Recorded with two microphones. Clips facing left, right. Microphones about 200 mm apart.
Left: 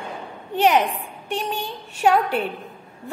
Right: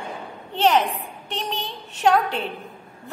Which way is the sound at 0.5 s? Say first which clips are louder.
Left 1 dB; 15° left (ahead or behind).